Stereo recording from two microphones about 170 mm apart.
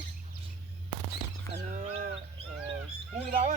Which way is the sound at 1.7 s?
40° right (ahead or behind).